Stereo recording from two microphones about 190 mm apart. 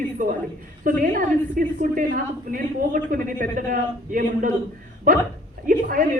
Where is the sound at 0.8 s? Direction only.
45° right (ahead or behind).